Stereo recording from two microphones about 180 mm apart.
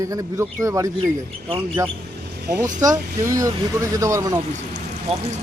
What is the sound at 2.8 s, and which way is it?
Speech, 15° right (ahead or behind).